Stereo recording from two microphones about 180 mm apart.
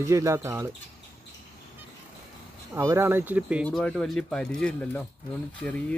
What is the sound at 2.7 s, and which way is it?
Speech, 15° right (ahead or behind).